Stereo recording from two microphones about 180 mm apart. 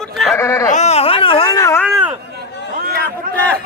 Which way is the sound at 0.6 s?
40° left (ahead or behind).